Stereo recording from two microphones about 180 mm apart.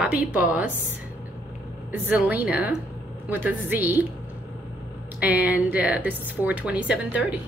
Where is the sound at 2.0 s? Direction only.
10° right (ahead or behind).